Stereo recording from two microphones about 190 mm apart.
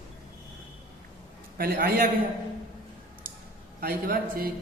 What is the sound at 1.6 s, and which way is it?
Speech, 50° right (ahead or behind).